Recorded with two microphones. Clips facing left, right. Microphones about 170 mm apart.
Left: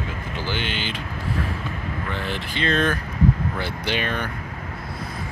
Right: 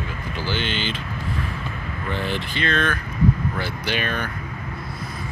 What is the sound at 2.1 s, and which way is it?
Speech, centre (ahead or behind).